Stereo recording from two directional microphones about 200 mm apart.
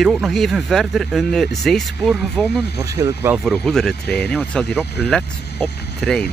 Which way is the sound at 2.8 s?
15° right (ahead or behind).